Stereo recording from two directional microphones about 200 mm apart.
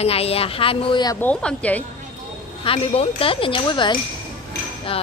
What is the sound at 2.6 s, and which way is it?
A woman's voice, 30° left (ahead or behind).